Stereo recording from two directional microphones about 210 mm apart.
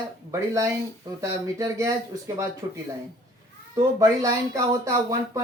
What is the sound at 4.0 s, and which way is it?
Speech, 15° right (ahead or behind).